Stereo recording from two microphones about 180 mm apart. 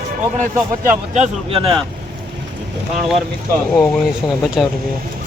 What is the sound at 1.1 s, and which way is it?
Speech, 40° right (ahead or behind).